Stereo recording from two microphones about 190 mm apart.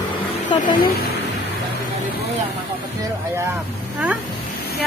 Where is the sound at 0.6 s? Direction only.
45° left (ahead or behind).